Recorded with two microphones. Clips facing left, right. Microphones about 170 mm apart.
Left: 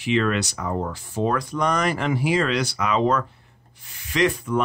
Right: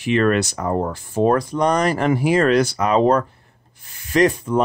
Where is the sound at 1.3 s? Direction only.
35° right (ahead or behind).